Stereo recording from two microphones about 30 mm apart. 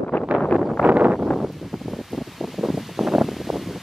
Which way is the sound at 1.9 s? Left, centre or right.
Centre.